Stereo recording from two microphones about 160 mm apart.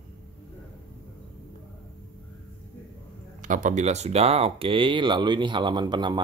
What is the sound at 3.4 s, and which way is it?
Speech, 55° right (ahead or behind).